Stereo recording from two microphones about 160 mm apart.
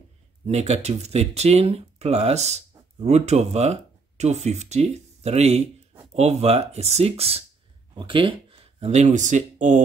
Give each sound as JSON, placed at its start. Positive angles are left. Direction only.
{"t": 0.5, "sound": "speech", "side_deg": -45}